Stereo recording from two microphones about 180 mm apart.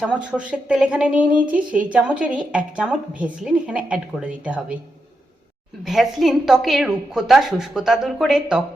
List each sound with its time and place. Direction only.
0.0 s speech: 5° right (ahead or behind)
5.8 s a woman's voice: centre (ahead or behind)